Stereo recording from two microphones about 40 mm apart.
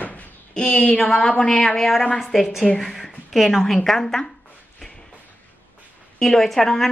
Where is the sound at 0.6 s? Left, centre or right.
Left.